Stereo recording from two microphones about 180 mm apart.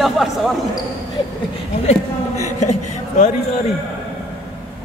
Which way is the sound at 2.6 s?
40° left (ahead or behind).